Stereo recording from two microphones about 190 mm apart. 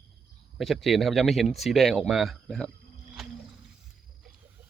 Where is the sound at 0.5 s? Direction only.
Centre (ahead or behind).